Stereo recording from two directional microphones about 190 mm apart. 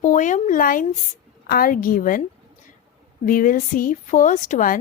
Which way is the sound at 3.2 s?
45° left (ahead or behind).